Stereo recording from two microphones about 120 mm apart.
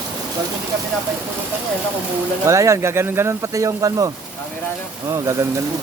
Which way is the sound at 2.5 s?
25° right (ahead or behind).